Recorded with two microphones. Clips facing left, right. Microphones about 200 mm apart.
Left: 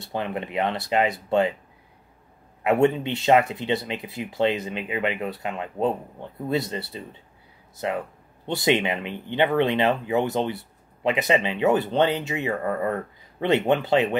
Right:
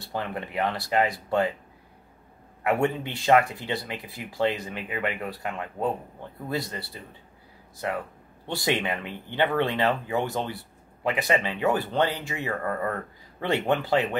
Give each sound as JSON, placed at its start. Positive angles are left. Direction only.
{"t": 0.0, "sound": "speech", "side_deg": 20}
{"t": 2.6, "sound": "speech", "side_deg": 20}